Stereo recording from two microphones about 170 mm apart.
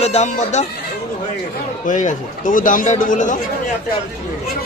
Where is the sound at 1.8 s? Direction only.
45° left (ahead or behind).